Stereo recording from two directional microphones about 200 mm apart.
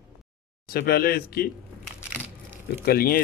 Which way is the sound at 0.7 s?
50° left (ahead or behind).